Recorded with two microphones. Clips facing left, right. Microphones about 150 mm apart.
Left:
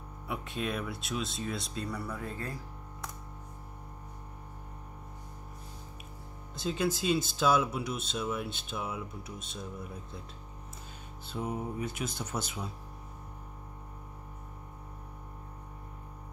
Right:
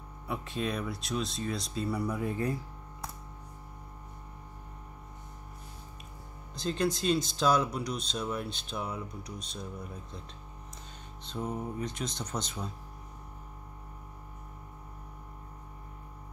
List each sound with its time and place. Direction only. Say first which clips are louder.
0.3 s speech: right 1 dB; centre (ahead or behind)
2.0 s speech: right 6 dB; 15° right (ahead or behind)
6.5 s speech: right 1 dB; 5° left (ahead or behind)
11.2 s speech: even; 10° left (ahead or behind)